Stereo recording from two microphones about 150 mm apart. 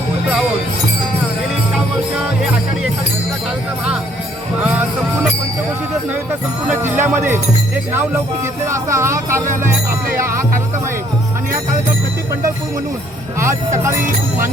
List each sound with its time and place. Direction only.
4.6 s music: 10° right (ahead or behind)
6.7 s speech: 15° right (ahead or behind)
8.6 s speech: 20° right (ahead or behind)
13.4 s speech: 20° right (ahead or behind)